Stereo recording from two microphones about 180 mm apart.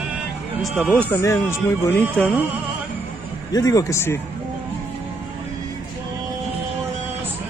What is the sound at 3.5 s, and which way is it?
Speech, 20° left (ahead or behind).